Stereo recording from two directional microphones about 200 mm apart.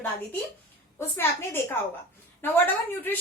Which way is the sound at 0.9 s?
10° left (ahead or behind).